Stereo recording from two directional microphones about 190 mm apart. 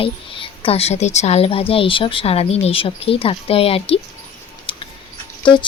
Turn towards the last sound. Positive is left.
turn(degrees=25)  # may be behind; listen again after turning